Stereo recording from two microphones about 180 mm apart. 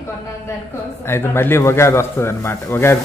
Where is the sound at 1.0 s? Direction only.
15° left (ahead or behind).